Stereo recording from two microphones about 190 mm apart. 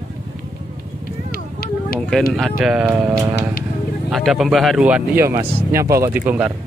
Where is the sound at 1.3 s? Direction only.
55° left (ahead or behind).